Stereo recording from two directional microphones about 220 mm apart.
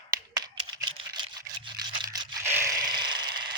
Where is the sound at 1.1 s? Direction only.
20° right (ahead or behind).